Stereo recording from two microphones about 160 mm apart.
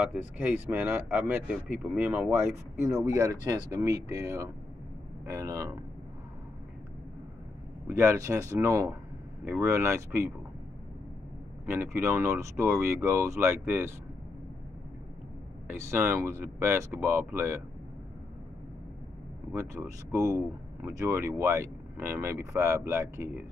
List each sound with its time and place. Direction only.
0.0 s speech: 10° right (ahead or behind)
7.8 s speech: 15° right (ahead or behind)
11.6 s speech: 15° right (ahead or behind)
15.7 s speech: 15° right (ahead or behind)
19.5 s speech: 15° right (ahead or behind)